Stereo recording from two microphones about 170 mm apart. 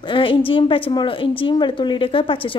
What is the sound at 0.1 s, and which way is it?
A woman's voice, 30° left (ahead or behind).